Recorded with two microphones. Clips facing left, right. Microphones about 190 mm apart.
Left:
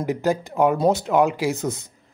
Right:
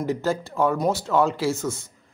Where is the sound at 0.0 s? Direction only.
15° left (ahead or behind).